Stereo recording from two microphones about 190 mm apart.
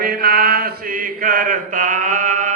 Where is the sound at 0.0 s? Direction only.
55° right (ahead or behind).